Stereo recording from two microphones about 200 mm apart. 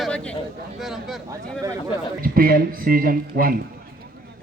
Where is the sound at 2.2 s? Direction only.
45° right (ahead or behind).